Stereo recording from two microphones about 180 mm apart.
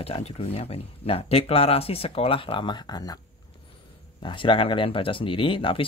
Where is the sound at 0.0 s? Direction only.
35° left (ahead or behind).